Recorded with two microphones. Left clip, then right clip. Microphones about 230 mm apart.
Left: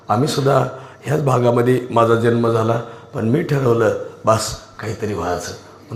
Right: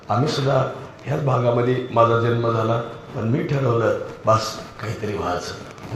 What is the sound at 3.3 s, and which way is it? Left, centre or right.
A man's voice, left.